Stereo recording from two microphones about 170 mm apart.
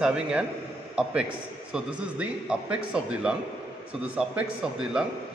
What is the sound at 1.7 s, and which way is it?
A man's voice, 5° right (ahead or behind).